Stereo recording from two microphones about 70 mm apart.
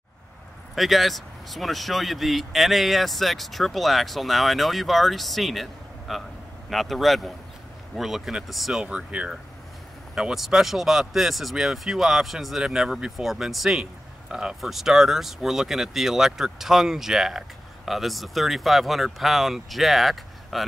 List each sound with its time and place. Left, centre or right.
0.7 s speech: centre